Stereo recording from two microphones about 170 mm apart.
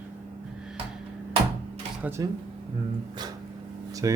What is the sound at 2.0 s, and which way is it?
Speech, 15° right (ahead or behind).